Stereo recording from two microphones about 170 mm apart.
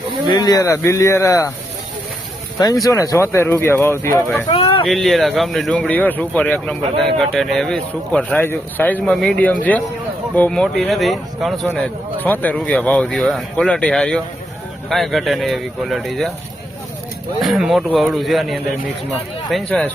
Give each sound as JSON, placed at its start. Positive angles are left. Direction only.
{"t": 0.3, "sound": "speech", "side_deg": 20}
{"t": 2.8, "sound": "speech", "side_deg": 20}
{"t": 4.4, "sound": "a sound", "side_deg": 30}
{"t": 4.9, "sound": "speech", "side_deg": 0}
{"t": 17.4, "sound": "speech", "side_deg": 0}